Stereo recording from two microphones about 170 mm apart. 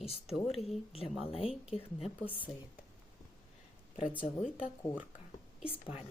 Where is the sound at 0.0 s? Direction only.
35° left (ahead or behind).